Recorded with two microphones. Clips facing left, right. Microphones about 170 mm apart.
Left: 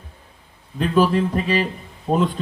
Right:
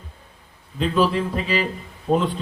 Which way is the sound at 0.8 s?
45° left (ahead or behind).